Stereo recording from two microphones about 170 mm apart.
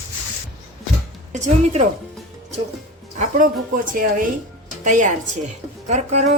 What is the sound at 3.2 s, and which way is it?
A woman's voice, 55° right (ahead or behind).